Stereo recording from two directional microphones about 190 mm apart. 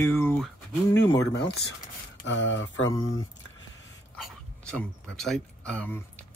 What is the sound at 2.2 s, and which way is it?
Speech, 75° left (ahead or behind).